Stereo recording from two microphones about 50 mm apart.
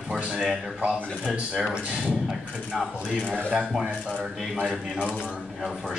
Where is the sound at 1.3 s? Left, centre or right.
Centre.